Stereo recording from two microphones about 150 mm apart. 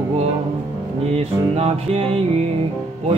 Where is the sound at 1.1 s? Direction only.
40° right (ahead or behind).